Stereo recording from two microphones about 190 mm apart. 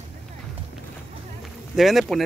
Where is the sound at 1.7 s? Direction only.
Centre (ahead or behind).